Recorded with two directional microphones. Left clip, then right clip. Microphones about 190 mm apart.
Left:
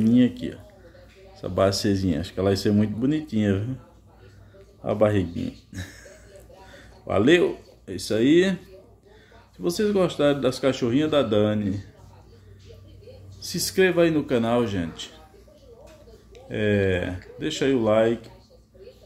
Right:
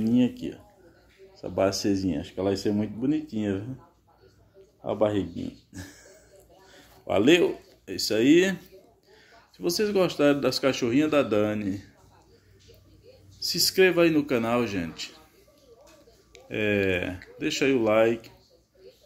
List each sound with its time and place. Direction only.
0.0 s speech: 15° left (ahead or behind)
2.1 s speech: 25° left (ahead or behind)
4.8 s speech: 20° left (ahead or behind)
5.7 s a sound: 10° left (ahead or behind)
6.7 s speech: 10° left (ahead or behind)
9.6 s speech: 15° left (ahead or behind)
13.4 s speech: 10° left (ahead or behind)
16.4 s speech: 10° left (ahead or behind)